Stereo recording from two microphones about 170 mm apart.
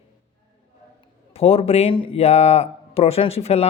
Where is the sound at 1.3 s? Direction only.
35° left (ahead or behind).